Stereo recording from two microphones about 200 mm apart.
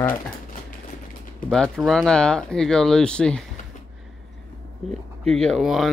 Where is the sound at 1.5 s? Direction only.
Centre (ahead or behind).